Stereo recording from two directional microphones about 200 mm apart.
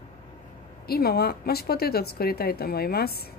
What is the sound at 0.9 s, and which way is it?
A woman's voice, 50° left (ahead or behind).